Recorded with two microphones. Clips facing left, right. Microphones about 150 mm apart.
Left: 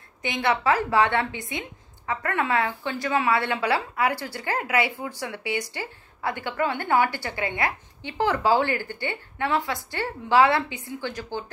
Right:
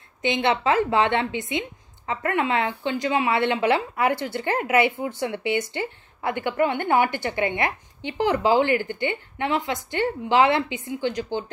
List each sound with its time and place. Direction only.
0.2 s a woman's voice: 25° right (ahead or behind)